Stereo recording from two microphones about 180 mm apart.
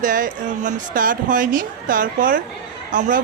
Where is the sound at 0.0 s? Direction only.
50° right (ahead or behind).